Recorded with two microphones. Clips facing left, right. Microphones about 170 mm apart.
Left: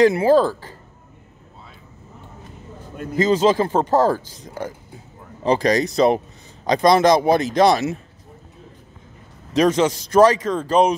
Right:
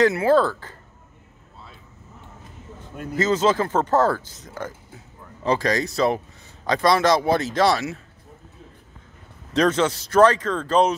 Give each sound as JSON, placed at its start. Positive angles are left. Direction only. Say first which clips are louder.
{"t": 0.0, "sound": "speech", "louder": "left 3 dB", "side_deg": 15}
{"t": 3.2, "sound": "speech", "louder": "left 3 dB", "side_deg": 15}
{"t": 9.5, "sound": "speech", "louder": "left 3 dB", "side_deg": 10}